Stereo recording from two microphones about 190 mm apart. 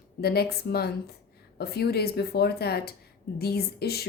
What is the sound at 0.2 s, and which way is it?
Speech, 55° left (ahead or behind).